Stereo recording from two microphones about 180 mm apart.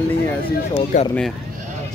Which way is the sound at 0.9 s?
45° left (ahead or behind).